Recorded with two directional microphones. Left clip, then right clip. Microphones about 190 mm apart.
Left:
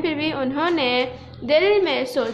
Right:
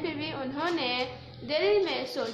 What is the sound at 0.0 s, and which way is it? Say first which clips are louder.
A woman's voice: left 10 dB; 55° left (ahead or behind).